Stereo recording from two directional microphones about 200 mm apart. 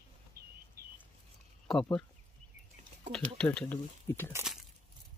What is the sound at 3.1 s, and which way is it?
Speech, 5° left (ahead or behind).